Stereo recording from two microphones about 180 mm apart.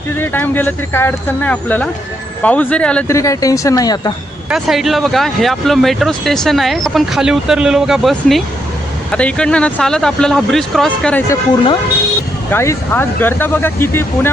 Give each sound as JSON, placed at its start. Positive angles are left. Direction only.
{"t": 0.2, "sound": "speech", "side_deg": 10}
{"t": 3.2, "sound": "speech", "side_deg": 15}
{"t": 4.4, "sound": "speech", "side_deg": 0}
{"t": 12.5, "sound": "speech", "side_deg": 10}